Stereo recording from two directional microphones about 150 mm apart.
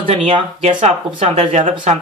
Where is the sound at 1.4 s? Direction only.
55° right (ahead or behind).